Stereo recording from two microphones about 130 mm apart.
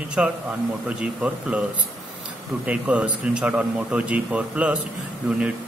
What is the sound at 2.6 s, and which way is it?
Speech, 10° right (ahead or behind).